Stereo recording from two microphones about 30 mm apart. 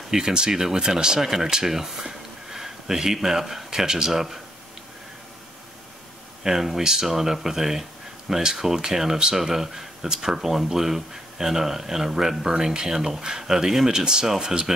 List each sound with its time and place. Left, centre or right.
0.1 s speech: right
3.8 s speech: right
4.1 s speech: centre
6.4 s speech: centre
7.1 s speech: centre
13.9 s speech: right